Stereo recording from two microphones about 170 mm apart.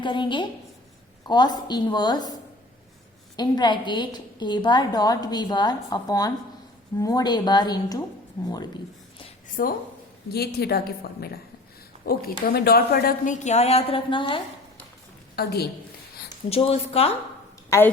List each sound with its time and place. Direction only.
0.0 s a woman's voice: 30° left (ahead or behind)
3.3 s a woman's voice: 25° left (ahead or behind)
9.5 s a woman's voice: 50° left (ahead or behind)
10.3 s a woman's voice: 70° left (ahead or behind)
13.4 s a woman's voice: 40° left (ahead or behind)
15.4 s a woman's voice: 70° left (ahead or behind)
16.5 s a woman's voice: 35° left (ahead or behind)
17.7 s a woman's voice: 15° left (ahead or behind)